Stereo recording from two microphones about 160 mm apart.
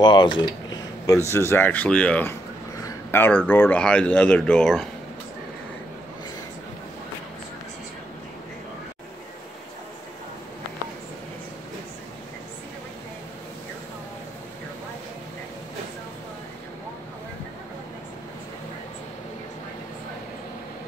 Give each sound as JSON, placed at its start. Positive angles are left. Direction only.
{"t": 0.0, "sound": "speech", "side_deg": 25}